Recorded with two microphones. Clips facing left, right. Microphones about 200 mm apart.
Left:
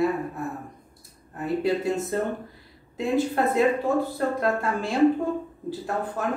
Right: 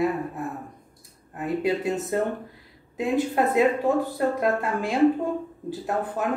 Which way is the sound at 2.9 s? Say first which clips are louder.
Even; 20° right (ahead or behind).